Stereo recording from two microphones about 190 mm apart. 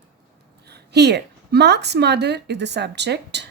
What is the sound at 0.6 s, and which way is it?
Speech, 60° right (ahead or behind).